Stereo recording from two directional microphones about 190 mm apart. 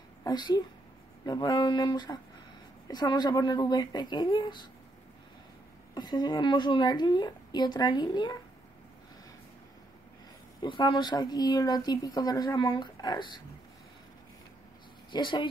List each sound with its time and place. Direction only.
0.2 s speech: 20° left (ahead or behind)
5.9 s speech: 20° left (ahead or behind)
10.6 s speech: 25° left (ahead or behind)
15.0 s speech: 25° left (ahead or behind)